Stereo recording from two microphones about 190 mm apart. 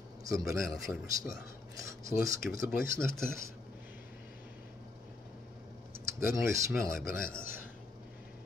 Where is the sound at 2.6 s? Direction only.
50° left (ahead or behind).